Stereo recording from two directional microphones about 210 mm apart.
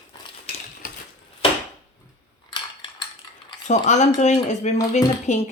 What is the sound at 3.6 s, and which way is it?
Speech, 35° left (ahead or behind).